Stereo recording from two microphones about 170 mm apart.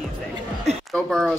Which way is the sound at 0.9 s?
Centre (ahead or behind).